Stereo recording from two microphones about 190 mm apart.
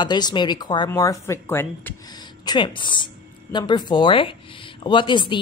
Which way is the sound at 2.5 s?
25° left (ahead or behind).